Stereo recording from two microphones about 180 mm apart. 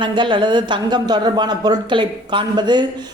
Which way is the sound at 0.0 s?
25° right (ahead or behind).